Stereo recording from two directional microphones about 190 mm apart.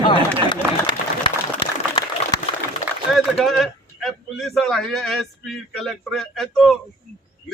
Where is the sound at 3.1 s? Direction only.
Centre (ahead or behind).